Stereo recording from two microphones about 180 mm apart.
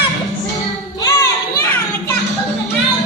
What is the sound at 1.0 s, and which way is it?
Children playing, 15° left (ahead or behind).